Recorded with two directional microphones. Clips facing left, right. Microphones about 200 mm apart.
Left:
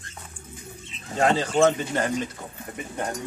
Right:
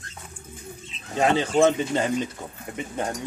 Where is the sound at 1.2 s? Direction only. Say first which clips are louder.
Right 1 dB; 20° right (ahead or behind).